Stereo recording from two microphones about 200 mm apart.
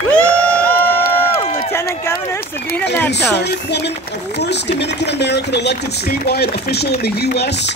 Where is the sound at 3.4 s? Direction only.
55° left (ahead or behind).